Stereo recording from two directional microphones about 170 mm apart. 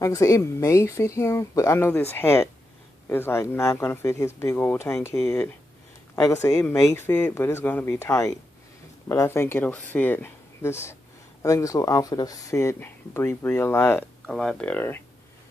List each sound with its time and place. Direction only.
0.0 s speech: 20° left (ahead or behind)
14.2 s speech: centre (ahead or behind)